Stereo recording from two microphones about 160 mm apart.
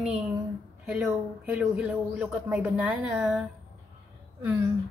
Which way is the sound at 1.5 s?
10° right (ahead or behind).